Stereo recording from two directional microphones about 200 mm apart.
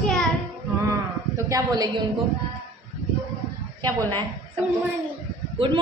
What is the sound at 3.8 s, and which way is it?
Speech, 10° left (ahead or behind).